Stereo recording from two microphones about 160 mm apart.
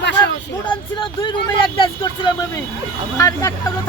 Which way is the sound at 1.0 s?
30° left (ahead or behind).